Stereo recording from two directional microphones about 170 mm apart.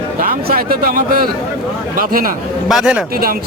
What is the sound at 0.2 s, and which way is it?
Speech, 60° right (ahead or behind).